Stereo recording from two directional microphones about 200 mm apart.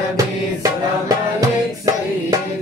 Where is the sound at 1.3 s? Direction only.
15° right (ahead or behind).